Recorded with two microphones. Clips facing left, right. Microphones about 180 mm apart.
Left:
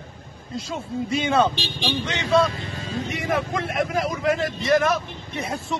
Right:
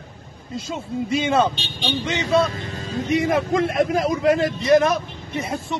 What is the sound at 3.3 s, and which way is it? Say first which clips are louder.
Speech: right 5 dB; 25° right (ahead or behind).